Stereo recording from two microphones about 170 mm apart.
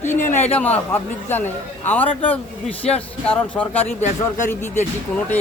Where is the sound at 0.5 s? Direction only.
10° left (ahead or behind).